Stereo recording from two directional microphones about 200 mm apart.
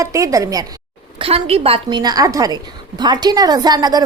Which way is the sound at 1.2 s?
30° right (ahead or behind).